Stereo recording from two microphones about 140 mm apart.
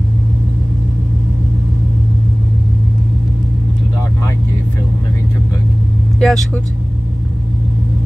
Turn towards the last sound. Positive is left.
turn(degrees=5)  # may be behind; listen again after turning